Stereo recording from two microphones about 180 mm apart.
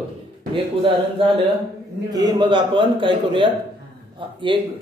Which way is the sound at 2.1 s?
25° right (ahead or behind).